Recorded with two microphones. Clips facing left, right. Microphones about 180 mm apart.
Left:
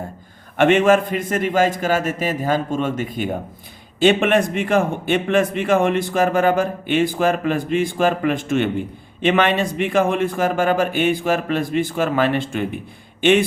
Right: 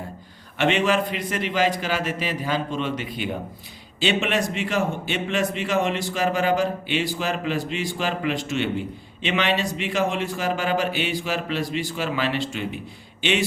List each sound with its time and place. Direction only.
0.5 s speech: 50° left (ahead or behind)